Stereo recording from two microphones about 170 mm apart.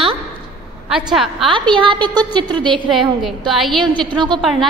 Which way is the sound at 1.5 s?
30° right (ahead or behind).